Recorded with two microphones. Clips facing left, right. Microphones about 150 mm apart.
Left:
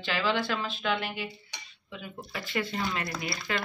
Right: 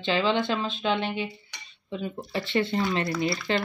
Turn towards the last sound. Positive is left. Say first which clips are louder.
# right 7 dB
turn(degrees=-30)  # may be behind; listen again after turning